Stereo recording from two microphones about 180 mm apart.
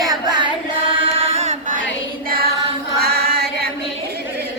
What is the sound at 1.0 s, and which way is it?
Chant, 35° right (ahead or behind).